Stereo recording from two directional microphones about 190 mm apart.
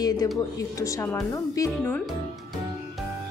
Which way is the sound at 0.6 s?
15° left (ahead or behind).